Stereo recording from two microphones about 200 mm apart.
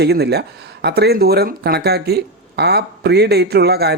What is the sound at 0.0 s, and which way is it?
Speech, 55° right (ahead or behind).